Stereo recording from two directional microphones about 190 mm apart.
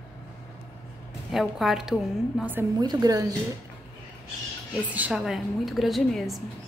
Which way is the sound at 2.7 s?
20° right (ahead or behind).